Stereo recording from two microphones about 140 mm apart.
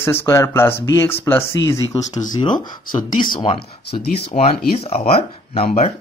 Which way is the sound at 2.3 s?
35° left (ahead or behind).